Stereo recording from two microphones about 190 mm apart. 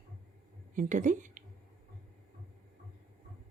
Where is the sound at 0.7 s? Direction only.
45° right (ahead or behind).